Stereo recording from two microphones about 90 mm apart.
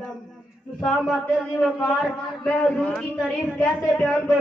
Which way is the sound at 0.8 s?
Centre (ahead or behind).